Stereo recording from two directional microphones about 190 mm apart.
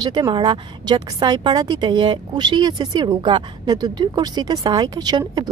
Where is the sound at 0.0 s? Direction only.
25° right (ahead or behind).